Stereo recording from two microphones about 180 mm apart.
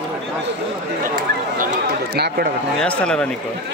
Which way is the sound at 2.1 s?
60° right (ahead or behind).